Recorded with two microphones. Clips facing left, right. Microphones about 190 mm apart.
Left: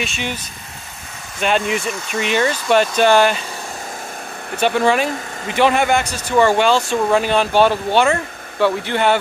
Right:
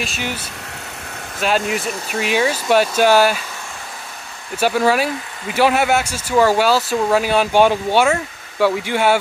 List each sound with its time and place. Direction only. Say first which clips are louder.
0.0 s speech: left 1 dB; centre (ahead or behind)
1.4 s speech: left 1 dB; centre (ahead or behind)
4.6 s speech: even; 5° right (ahead or behind)